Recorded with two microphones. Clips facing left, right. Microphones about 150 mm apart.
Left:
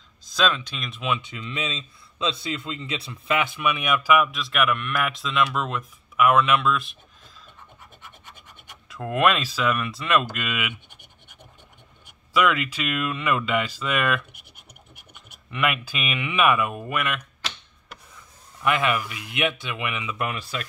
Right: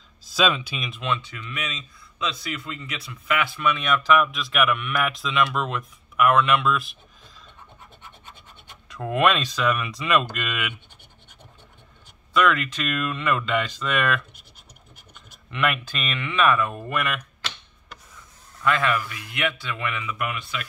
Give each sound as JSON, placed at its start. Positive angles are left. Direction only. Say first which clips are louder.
{"t": 0.2, "sound": "speech", "louder": "right 1 dB", "side_deg": -5}
{"t": 1.0, "sound": "speech", "louder": "left 1 dB", "side_deg": 10}
{"t": 1.3, "sound": "speech", "louder": "left 3 dB", "side_deg": 25}
{"t": 8.8, "sound": "speech", "louder": "even", "side_deg": 0}
{"t": 12.4, "sound": "speech", "louder": "even", "side_deg": 10}
{"t": 18.6, "sound": "speech", "louder": "even", "side_deg": 20}
{"t": 20.2, "sound": "speech", "louder": "left 1 dB", "side_deg": 35}